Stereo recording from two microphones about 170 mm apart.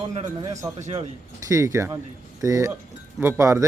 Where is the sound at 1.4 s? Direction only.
20° right (ahead or behind).